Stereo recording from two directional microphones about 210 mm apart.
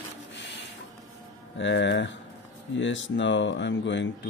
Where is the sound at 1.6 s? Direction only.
60° left (ahead or behind).